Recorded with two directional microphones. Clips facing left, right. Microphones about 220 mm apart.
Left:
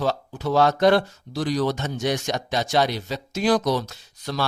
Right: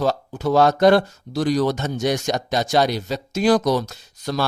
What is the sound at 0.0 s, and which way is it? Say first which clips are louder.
Speech: right 4 dB; 45° right (ahead or behind).